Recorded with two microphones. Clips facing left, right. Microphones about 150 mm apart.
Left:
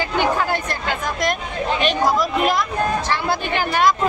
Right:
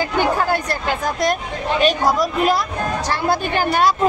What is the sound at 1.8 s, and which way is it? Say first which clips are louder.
Speech: right 3 dB; 40° right (ahead or behind).